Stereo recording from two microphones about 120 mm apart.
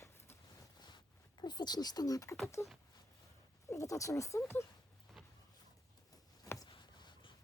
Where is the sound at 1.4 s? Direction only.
35° left (ahead or behind).